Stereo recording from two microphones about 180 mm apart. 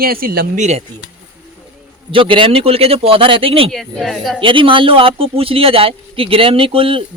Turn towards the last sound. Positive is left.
turn(degrees=-30)  # may be behind; listen again after turning